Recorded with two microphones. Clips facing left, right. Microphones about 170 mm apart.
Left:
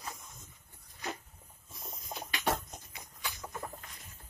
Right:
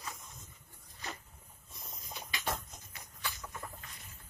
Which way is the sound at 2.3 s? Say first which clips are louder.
Left 5 dB; 65° left (ahead or behind).